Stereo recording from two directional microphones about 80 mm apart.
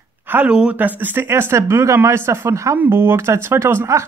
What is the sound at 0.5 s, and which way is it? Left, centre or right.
Speech, centre.